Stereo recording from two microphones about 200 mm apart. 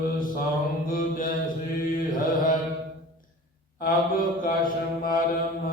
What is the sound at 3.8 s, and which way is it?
Mantra, 45° left (ahead or behind).